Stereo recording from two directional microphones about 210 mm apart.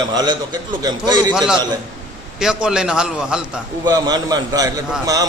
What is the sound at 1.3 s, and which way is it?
A man's voice, centre (ahead or behind).